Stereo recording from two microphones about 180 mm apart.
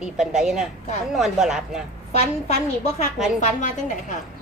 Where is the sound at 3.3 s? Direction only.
45° left (ahead or behind).